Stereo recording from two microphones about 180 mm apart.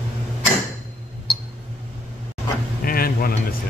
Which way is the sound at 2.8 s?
55° left (ahead or behind).